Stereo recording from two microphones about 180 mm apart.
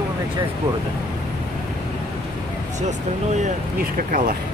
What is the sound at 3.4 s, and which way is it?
Speech, 50° right (ahead or behind).